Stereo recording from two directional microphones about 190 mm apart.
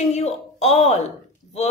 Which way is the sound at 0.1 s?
35° left (ahead or behind).